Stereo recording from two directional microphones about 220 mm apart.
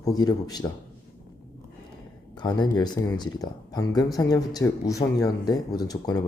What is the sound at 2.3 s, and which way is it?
Speech, 20° left (ahead or behind).